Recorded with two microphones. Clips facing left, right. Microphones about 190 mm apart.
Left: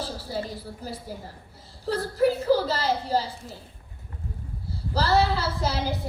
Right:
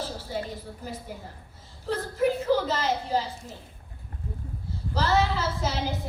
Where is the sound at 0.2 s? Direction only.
35° left (ahead or behind).